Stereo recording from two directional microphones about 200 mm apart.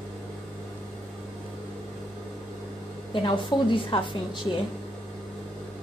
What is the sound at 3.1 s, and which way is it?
A woman's voice, 25° left (ahead or behind).